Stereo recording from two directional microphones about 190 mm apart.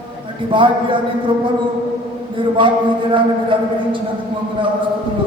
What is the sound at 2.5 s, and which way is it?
A man's voice, 25° right (ahead or behind).